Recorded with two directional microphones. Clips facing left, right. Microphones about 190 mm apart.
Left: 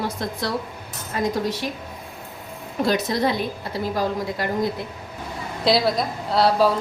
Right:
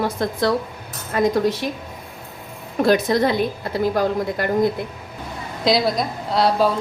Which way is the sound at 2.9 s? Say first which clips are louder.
Right 5 dB; 55° right (ahead or behind).